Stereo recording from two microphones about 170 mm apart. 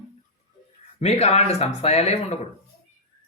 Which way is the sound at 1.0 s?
40° left (ahead or behind).